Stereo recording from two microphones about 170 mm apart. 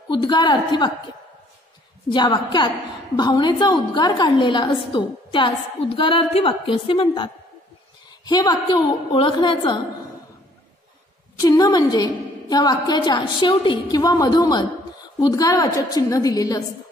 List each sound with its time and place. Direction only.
0.1 s a woman's voice: 25° left (ahead or behind)
2.0 s a woman's voice: 25° left (ahead or behind)
8.3 s a woman's voice: 25° left (ahead or behind)
11.3 s a woman's voice: 20° left (ahead or behind)